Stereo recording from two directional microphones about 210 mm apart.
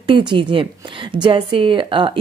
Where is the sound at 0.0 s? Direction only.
20° right (ahead or behind).